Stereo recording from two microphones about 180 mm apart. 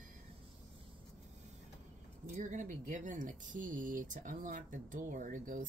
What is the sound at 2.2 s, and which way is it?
Speech, 45° right (ahead or behind).